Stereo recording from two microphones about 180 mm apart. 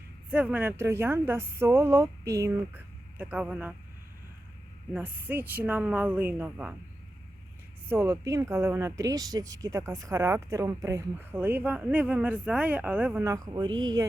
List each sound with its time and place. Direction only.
0.3 s a woman's voice: 10° right (ahead or behind)
4.9 s a woman's voice: 10° right (ahead or behind)
7.9 s a woman's voice: 15° right (ahead or behind)